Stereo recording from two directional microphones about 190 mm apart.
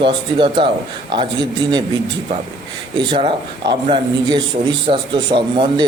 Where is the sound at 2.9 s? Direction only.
25° right (ahead or behind).